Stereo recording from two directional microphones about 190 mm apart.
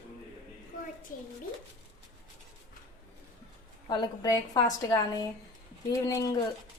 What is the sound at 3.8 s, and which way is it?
A woman's voice, 25° left (ahead or behind).